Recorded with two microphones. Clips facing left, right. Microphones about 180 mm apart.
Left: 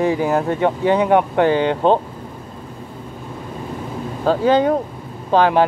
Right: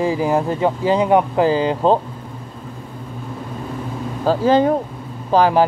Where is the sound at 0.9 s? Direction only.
30° right (ahead or behind).